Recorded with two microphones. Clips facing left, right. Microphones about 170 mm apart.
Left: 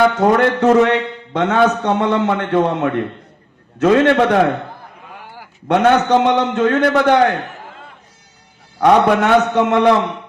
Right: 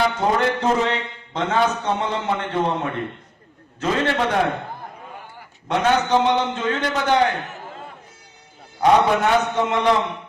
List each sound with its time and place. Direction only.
0.0 s a man's voice: 60° left (ahead or behind)
8.8 s a man's voice: 65° left (ahead or behind)